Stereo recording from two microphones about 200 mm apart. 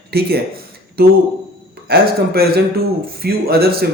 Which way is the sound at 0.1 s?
50° right (ahead or behind).